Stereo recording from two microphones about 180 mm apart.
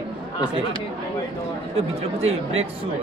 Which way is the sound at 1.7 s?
35° right (ahead or behind).